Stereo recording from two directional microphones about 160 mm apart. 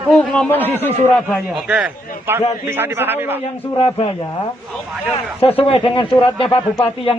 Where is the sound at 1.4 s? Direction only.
5° right (ahead or behind).